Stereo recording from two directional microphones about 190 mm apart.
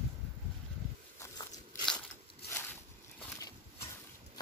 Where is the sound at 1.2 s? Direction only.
20° left (ahead or behind).